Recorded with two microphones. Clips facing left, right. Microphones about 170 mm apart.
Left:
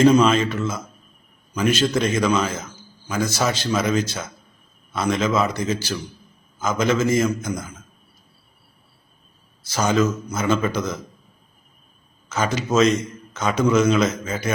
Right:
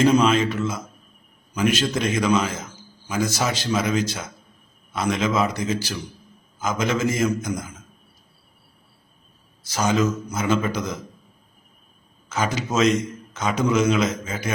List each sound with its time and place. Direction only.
0.0 s a man's voice: 10° right (ahead or behind)
1.9 s a man's voice: 15° right (ahead or behind)
9.7 s a man's voice: 15° right (ahead or behind)
12.3 s a man's voice: 15° right (ahead or behind)
14.3 s a man's voice: centre (ahead or behind)